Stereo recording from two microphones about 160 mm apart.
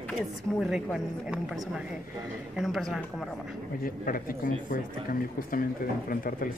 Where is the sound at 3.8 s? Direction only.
65° left (ahead or behind).